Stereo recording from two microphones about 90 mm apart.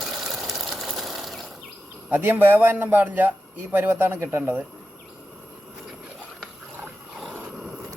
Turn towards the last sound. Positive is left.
turn(degrees=-5)  # may be behind; listen again after turning